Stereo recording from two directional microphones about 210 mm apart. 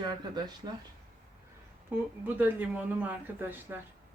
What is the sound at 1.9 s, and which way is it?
A woman's voice, 10° right (ahead or behind).